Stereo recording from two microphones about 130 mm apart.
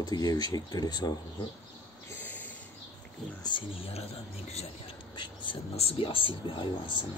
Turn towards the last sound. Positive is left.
turn(degrees=40)  # may be behind; listen again after turning